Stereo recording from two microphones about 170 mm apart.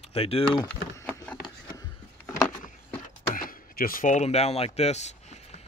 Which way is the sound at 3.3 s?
55° left (ahead or behind).